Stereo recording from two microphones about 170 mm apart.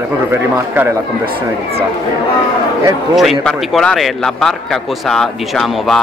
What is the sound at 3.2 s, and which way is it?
A man's voice, centre (ahead or behind).